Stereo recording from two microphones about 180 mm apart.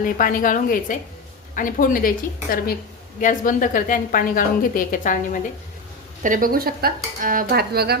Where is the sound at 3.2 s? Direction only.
45° left (ahead or behind).